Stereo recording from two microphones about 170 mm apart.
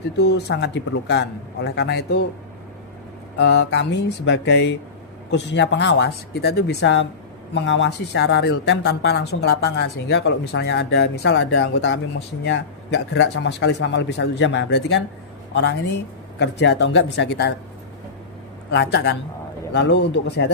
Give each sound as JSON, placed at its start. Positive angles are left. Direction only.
{"t": 0.2, "sound": "a man's voice", "side_deg": 80}
{"t": 3.3, "sound": "a man's voice", "side_deg": 75}
{"t": 16.4, "sound": "speech", "side_deg": 90}
{"t": 18.7, "sound": "speech", "side_deg": 90}